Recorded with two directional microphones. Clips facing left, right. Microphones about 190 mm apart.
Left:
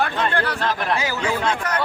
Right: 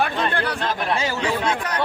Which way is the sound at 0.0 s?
15° right (ahead or behind).